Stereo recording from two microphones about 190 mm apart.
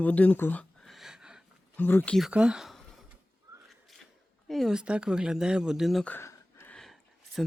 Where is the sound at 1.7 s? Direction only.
10° left (ahead or behind).